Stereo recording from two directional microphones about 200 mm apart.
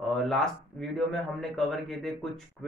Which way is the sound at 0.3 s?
Centre (ahead or behind).